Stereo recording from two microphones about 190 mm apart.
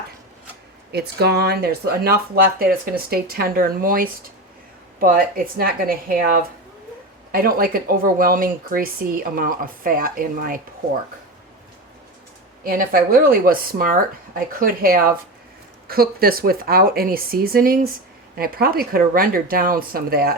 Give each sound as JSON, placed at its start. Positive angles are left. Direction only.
{"t": 0.9, "sound": "speech", "side_deg": -60}
{"t": 12.6, "sound": "speech", "side_deg": -50}